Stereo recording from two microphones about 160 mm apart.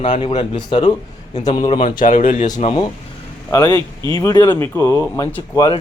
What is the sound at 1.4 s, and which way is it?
Speech, 50° left (ahead or behind).